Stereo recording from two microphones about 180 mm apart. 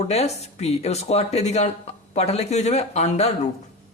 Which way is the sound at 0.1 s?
35° left (ahead or behind).